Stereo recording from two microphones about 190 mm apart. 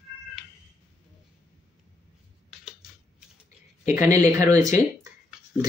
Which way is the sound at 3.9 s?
15° right (ahead or behind).